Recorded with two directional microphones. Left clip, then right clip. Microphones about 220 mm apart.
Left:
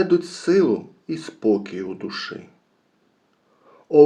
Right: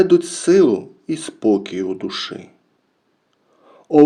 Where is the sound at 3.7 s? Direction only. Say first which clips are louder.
Right 1 dB; 40° right (ahead or behind).